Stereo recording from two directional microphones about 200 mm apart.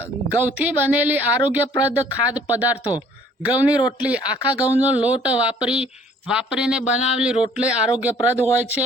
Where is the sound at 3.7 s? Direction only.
20° left (ahead or behind).